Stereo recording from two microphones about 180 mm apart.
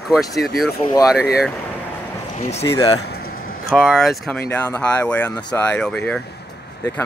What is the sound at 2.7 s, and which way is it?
Speech, 20° left (ahead or behind).